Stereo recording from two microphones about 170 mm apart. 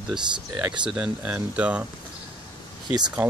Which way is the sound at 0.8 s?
5° right (ahead or behind).